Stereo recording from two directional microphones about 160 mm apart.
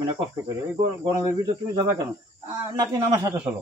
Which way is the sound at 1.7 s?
25° right (ahead or behind).